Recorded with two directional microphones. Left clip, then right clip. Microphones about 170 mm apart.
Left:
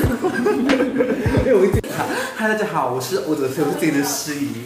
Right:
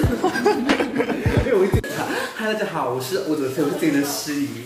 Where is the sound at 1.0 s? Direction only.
85° right.